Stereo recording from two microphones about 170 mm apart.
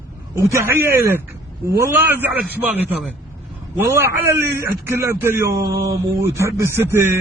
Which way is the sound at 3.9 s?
15° right (ahead or behind).